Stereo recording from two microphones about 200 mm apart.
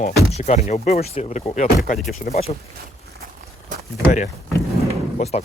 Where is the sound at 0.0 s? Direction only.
35° left (ahead or behind).